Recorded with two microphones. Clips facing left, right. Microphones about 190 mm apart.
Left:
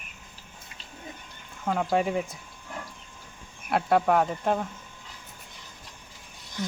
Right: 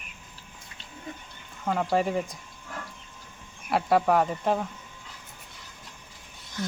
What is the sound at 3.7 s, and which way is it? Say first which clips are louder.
Speech: even; centre (ahead or behind).